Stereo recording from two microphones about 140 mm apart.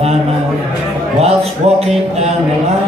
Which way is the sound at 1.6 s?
45° right (ahead or behind).